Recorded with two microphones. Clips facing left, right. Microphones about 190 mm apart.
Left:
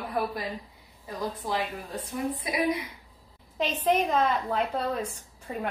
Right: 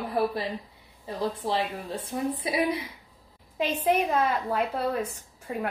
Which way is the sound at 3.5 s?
10° right (ahead or behind).